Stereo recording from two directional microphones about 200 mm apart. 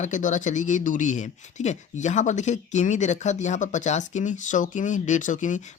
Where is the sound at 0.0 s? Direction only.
40° left (ahead or behind).